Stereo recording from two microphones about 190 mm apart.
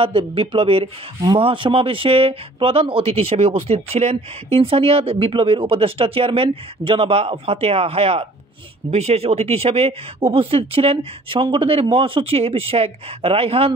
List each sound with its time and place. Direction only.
0.0 s speech: 30° right (ahead or behind)